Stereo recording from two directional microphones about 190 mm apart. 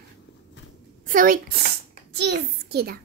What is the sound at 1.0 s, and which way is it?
Speech, 45° right (ahead or behind).